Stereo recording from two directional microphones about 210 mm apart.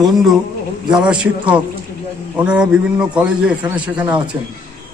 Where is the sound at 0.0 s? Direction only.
Centre (ahead or behind).